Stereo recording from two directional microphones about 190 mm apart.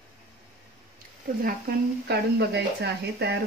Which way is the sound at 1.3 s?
50° right (ahead or behind).